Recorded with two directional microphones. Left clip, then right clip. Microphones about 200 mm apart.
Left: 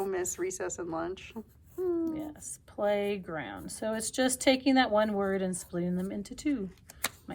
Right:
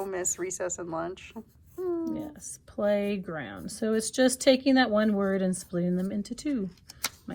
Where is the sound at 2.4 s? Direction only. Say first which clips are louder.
Right 2 dB; 40° right (ahead or behind).